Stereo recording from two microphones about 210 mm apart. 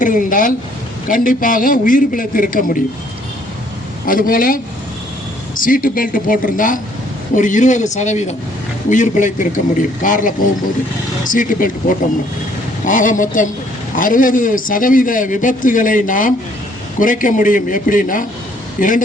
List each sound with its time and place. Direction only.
0.0 s a man's voice: 40° left (ahead or behind)
4.0 s a man's voice: 40° left (ahead or behind)